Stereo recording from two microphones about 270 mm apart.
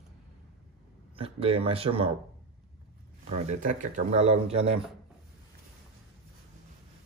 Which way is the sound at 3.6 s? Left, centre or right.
Right.